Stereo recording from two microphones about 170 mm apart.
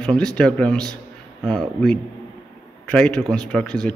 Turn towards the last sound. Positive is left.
turn(degrees=5)  # may be behind; listen again after turning